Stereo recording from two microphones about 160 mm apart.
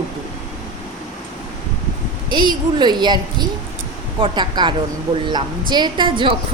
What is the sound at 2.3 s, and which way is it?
A woman's voice, 30° right (ahead or behind).